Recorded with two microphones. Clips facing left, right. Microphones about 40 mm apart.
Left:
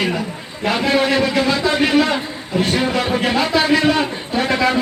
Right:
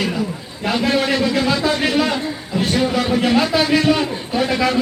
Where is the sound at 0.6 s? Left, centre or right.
Centre.